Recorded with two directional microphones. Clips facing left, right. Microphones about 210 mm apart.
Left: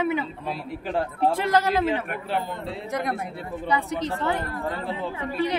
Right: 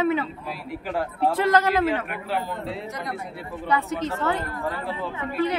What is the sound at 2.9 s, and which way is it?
Speech, 50° left (ahead or behind).